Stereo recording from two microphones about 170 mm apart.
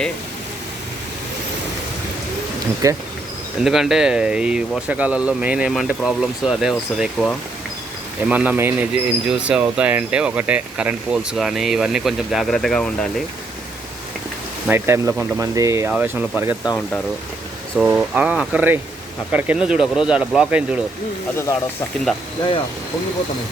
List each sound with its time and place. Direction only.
2.8 s speech: 20° right (ahead or behind)
3.6 s speech: 5° right (ahead or behind)
14.7 s speech: 15° right (ahead or behind)
17.7 s speech: 10° right (ahead or behind)